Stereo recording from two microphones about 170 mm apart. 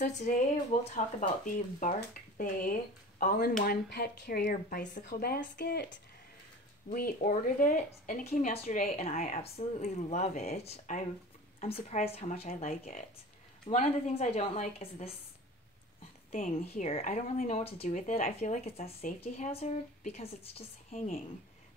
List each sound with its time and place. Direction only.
0.0 s speech: 45° left (ahead or behind); by 5.9 s 70° left (ahead or behind)
6.9 s speech: 55° left (ahead or behind)
9.4 s a woman's voice: 40° left (ahead or behind)
12.6 s speech: 55° left (ahead or behind)
13.7 s a woman's voice: 40° left (ahead or behind)
16.3 s a woman's voice: 45° left (ahead or behind)